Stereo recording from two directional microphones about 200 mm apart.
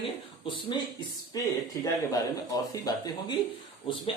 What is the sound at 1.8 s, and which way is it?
A man's voice, 15° left (ahead or behind).